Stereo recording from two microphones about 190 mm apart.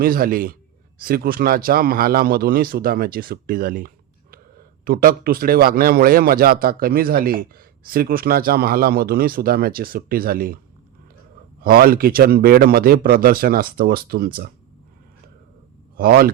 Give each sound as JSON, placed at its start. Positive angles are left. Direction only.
{"t": 0.0, "sound": "speech", "side_deg": -50}
{"t": 11.6, "sound": "speech", "side_deg": -50}
{"t": 16.0, "sound": "speech", "side_deg": -50}